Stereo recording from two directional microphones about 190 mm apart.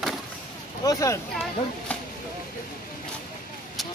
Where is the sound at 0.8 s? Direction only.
15° left (ahead or behind).